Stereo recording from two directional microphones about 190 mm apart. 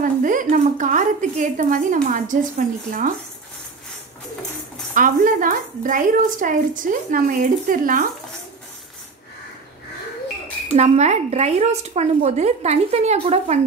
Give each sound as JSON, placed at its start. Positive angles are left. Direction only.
{"t": 0.0, "sound": "a woman's voice", "side_deg": -45}
{"t": 4.9, "sound": "a woman's voice", "side_deg": -45}
{"t": 10.7, "sound": "speech", "side_deg": -35}